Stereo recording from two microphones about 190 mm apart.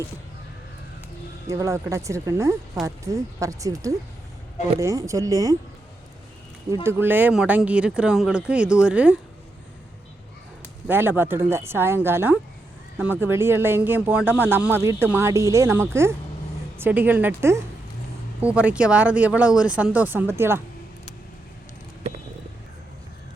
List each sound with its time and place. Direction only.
1.5 s speech: 15° right (ahead or behind)
6.8 s speech: 10° right (ahead or behind)
10.8 s speech: 10° right (ahead or behind)